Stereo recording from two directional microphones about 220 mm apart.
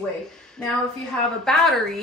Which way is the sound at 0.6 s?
5° left (ahead or behind).